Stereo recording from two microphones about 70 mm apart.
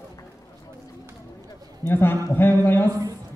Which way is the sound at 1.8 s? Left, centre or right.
Left.